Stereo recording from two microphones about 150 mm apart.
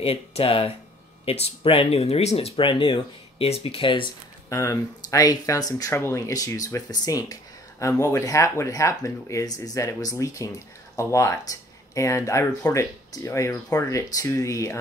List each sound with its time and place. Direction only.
0.0 s speech: 40° left (ahead or behind)
4.5 s speech: 20° left (ahead or behind)